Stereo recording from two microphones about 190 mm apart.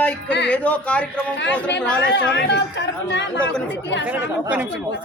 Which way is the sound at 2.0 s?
65° left (ahead or behind).